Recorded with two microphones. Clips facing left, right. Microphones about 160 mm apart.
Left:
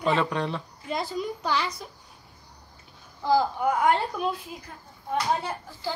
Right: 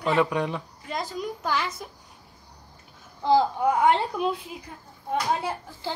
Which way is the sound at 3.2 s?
25° right (ahead or behind).